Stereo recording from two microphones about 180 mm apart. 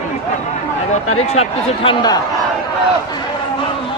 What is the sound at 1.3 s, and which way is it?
Speech, 30° left (ahead or behind).